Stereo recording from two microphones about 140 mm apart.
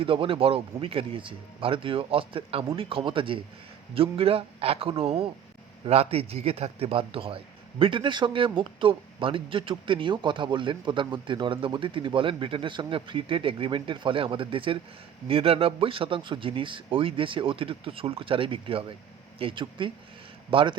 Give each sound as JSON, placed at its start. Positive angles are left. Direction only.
{"t": 0.0, "sound": "a man's voice", "side_deg": -40}